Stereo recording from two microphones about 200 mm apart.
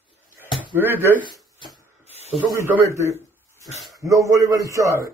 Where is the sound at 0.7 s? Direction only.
10° right (ahead or behind).